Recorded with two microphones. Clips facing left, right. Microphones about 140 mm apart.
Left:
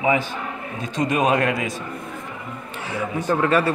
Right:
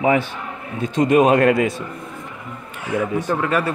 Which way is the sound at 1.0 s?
30° right (ahead or behind).